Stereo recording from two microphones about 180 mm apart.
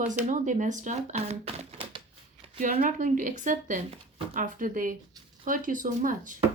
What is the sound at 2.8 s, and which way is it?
Speech, 45° right (ahead or behind).